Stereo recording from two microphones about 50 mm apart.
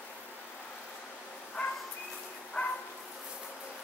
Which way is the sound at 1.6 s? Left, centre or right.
Left.